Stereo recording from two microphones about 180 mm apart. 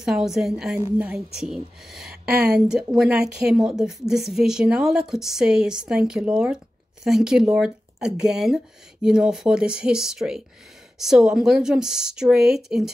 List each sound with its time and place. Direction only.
0.0 s a woman's voice: centre (ahead or behind)
2.3 s speech: 60° right (ahead or behind)
2.7 s a woman's voice: 5° right (ahead or behind)